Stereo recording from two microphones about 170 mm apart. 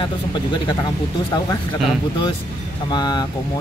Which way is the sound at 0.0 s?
25° left (ahead or behind).